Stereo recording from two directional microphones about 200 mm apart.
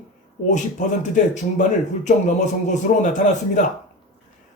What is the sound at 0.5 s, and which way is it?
A man's voice, 40° left (ahead or behind).